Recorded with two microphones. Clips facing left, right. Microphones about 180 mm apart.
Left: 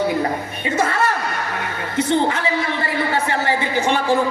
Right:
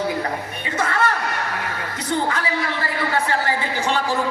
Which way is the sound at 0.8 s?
25° left (ahead or behind).